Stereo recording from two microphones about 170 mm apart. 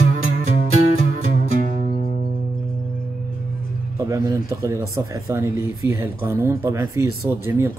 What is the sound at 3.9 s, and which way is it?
Speech, 20° right (ahead or behind).